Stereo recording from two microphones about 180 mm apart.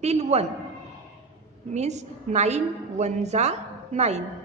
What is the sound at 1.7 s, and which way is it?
A woman's voice, 40° right (ahead or behind).